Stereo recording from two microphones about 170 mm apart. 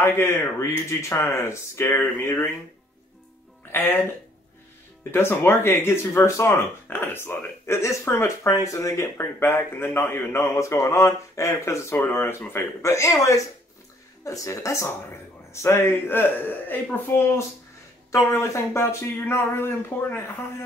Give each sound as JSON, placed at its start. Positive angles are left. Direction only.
{"t": 0.0, "sound": "speech", "side_deg": 15}
{"t": 3.7, "sound": "speech", "side_deg": 10}
{"t": 5.1, "sound": "speech", "side_deg": 15}